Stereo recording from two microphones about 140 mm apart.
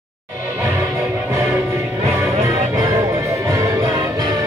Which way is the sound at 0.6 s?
20° right (ahead or behind).